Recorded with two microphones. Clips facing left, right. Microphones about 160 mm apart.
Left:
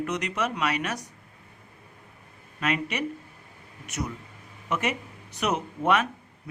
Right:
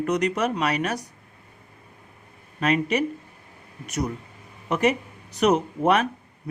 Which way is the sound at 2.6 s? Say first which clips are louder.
Right 6 dB; 35° right (ahead or behind).